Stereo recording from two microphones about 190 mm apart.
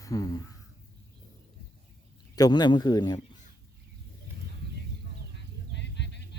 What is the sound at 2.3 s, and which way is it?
Speech, 20° left (ahead or behind).